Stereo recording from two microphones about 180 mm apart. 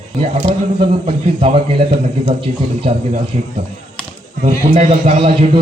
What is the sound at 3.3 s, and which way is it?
Speech, 40° right (ahead or behind).